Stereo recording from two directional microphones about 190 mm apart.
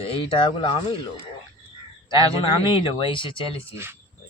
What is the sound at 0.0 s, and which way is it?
Speech, 30° left (ahead or behind).